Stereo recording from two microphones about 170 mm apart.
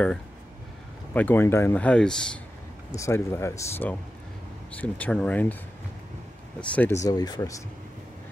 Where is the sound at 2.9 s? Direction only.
15° left (ahead or behind).